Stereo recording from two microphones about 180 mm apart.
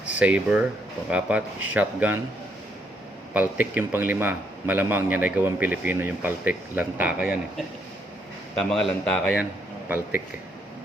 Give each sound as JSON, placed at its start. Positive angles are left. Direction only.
{"t": 0.0, "sound": "a man's voice", "side_deg": -5}
{"t": 3.3, "sound": "a man's voice", "side_deg": -10}
{"t": 8.5, "sound": "a man's voice", "side_deg": 0}